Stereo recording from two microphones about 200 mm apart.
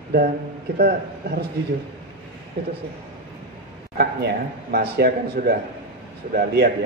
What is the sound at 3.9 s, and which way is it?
A man's voice, 50° right (ahead or behind).